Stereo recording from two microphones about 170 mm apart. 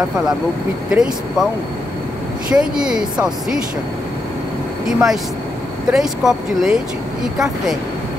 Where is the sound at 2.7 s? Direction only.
5° right (ahead or behind).